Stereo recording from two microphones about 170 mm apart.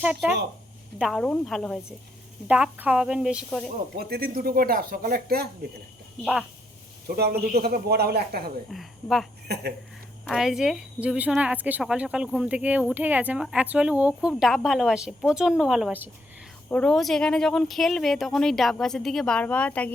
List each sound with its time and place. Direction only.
0.0 s speech: 5° right (ahead or behind)
3.9 s speech: 65° right (ahead or behind)
7.2 s speech: 65° right (ahead or behind)
8.7 s speech: centre (ahead or behind)
9.5 s speech: 80° right
10.2 s speech: centre (ahead or behind)
16.6 s speech: 5° left (ahead or behind)